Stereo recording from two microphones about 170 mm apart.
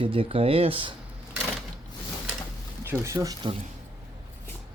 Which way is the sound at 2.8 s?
15° right (ahead or behind).